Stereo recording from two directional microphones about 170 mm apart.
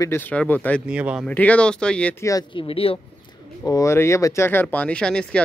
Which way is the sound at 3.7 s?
20° left (ahead or behind).